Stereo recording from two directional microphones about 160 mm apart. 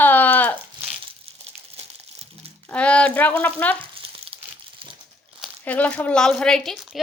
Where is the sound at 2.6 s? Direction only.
10° left (ahead or behind).